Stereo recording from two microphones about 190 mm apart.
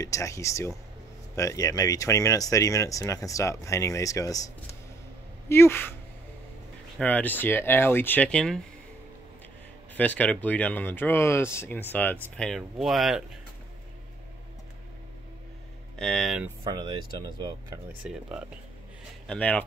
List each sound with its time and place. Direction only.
0.0 s speech: 15° left (ahead or behind)
5.5 s speech: 10° left (ahead or behind)
7.0 s speech: 10° left (ahead or behind)
9.9 s speech: 10° left (ahead or behind)
16.0 s speech: centre (ahead or behind)
16.6 s speech: 25° right (ahead or behind)
18.0 s speech: 5° right (ahead or behind)
19.2 s speech: 5° left (ahead or behind)